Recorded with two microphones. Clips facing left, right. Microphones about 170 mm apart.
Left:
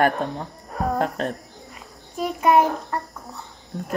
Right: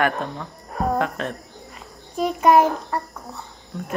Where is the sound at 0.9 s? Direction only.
40° left (ahead or behind).